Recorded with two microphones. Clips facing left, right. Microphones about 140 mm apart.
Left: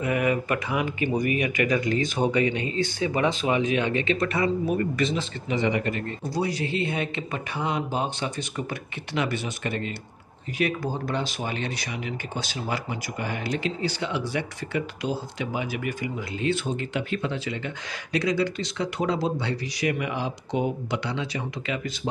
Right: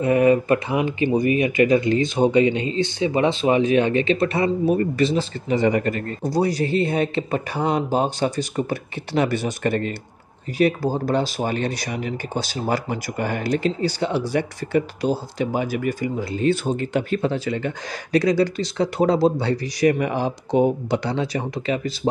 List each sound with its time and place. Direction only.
0.0 s speech: 30° right (ahead or behind)
10.6 s speech: 35° right (ahead or behind)